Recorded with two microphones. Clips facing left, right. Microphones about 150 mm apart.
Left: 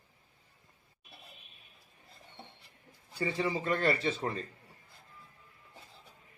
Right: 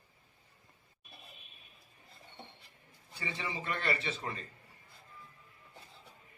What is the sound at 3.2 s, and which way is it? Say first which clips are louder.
A man's voice: left 8 dB; 40° left (ahead or behind).